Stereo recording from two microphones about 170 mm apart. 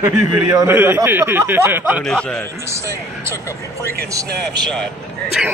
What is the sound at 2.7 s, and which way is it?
Speech, 15° right (ahead or behind).